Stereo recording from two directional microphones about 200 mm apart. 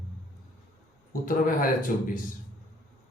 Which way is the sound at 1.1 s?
45° left (ahead or behind).